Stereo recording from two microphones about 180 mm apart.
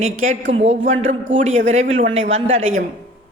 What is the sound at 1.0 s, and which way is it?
Speech, 90° right.